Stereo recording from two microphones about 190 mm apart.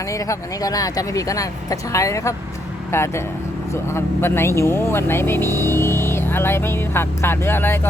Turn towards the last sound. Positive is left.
turn(degrees=10)  # may be behind; listen again after turning